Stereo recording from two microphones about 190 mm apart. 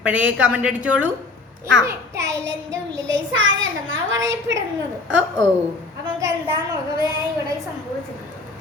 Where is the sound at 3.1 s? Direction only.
90° right.